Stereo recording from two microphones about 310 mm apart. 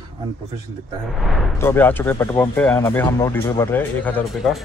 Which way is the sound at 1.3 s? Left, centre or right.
Centre.